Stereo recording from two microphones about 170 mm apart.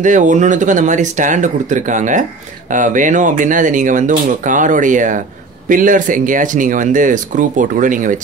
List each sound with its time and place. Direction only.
0.0 s speech: 45° right (ahead or behind)